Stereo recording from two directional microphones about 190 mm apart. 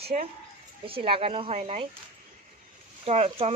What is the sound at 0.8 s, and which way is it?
Speech, 30° right (ahead or behind).